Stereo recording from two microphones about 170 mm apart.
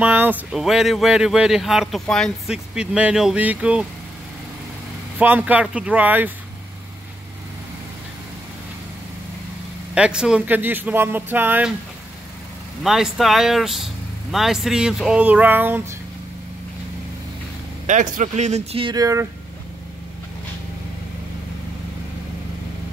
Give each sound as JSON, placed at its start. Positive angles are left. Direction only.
{"t": 0.0, "sound": "speech", "side_deg": -10}
{"t": 5.2, "sound": "speech", "side_deg": -10}
{"t": 9.9, "sound": "speech", "side_deg": -5}
{"t": 12.8, "sound": "speech", "side_deg": 0}
{"t": 17.8, "sound": "speech", "side_deg": -45}